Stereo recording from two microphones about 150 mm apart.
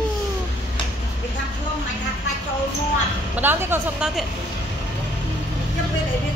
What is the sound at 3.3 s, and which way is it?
Speech, 15° right (ahead or behind).